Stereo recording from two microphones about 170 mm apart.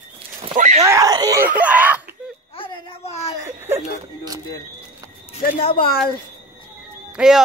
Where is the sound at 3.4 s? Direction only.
15° right (ahead or behind).